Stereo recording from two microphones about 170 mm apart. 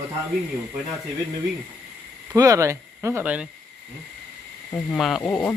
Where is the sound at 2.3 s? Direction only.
20° right (ahead or behind).